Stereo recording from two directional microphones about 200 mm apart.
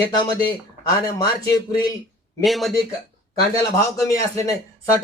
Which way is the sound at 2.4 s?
Centre (ahead or behind).